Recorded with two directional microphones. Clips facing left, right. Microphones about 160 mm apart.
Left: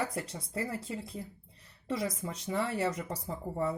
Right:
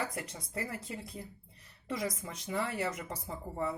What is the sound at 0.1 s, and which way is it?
Speech, 30° left (ahead or behind).